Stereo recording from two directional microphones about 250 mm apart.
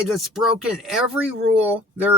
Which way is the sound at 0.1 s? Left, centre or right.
Centre.